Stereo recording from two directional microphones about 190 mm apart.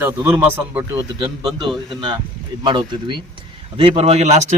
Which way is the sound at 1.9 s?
25° right (ahead or behind).